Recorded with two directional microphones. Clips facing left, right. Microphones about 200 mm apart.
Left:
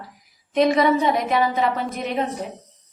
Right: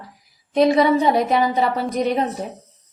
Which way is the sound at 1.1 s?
35° right (ahead or behind).